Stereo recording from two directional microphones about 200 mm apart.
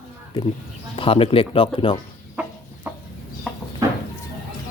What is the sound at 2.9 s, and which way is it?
Chicken, 10° right (ahead or behind).